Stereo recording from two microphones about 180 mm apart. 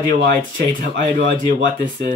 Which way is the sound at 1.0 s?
45° right (ahead or behind).